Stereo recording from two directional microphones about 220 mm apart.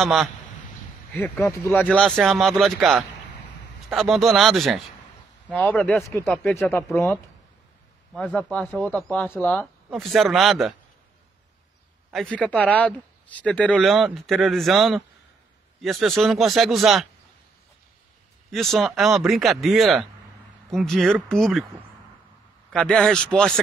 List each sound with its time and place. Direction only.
0.0 s speech: centre (ahead or behind)
12.1 s speech: centre (ahead or behind)
18.5 s speech: centre (ahead or behind)
22.7 s speech: 5° left (ahead or behind)